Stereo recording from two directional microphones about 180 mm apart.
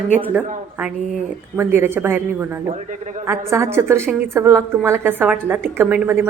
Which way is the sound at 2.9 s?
45° right (ahead or behind).